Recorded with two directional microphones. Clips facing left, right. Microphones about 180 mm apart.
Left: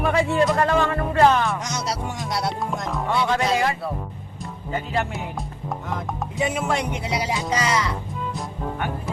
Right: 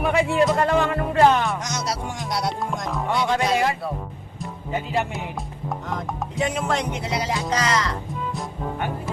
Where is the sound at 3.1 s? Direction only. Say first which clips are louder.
Even; 15° right (ahead or behind).